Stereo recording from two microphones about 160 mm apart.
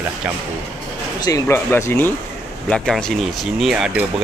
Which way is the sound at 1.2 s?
20° left (ahead or behind).